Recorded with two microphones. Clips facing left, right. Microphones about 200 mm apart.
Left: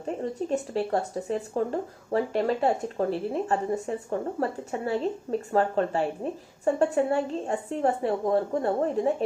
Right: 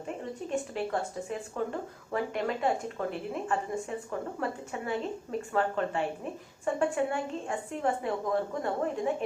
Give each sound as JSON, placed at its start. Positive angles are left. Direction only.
{"t": 0.2, "sound": "speech", "side_deg": 35}